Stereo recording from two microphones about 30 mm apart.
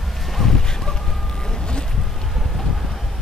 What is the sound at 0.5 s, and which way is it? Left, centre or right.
Honk, centre.